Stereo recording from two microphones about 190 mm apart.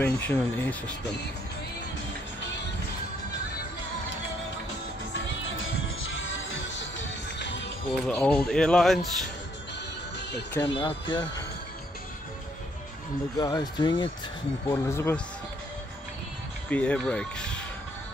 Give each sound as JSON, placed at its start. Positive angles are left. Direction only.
{"t": 0.0, "sound": "speech", "side_deg": 10}
{"t": 5.1, "sound": "music", "side_deg": 85}
{"t": 7.9, "sound": "speech", "side_deg": 5}
{"t": 10.6, "sound": "speech", "side_deg": 25}
{"t": 13.4, "sound": "speech", "side_deg": 20}
{"t": 14.7, "sound": "speech", "side_deg": 15}
{"t": 16.7, "sound": "speech", "side_deg": 5}